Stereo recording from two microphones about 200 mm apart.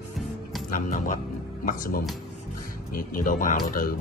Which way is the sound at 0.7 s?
40° left (ahead or behind).